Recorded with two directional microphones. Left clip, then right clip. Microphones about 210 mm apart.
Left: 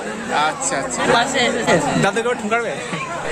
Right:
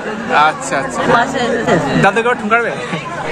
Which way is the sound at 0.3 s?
10° left (ahead or behind).